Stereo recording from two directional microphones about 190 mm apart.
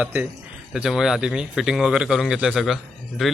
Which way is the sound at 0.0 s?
5° right (ahead or behind).